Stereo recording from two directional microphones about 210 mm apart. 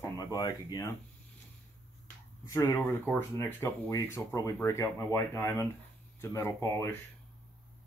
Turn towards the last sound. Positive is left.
turn(degrees=10)  # may be behind; listen again after turning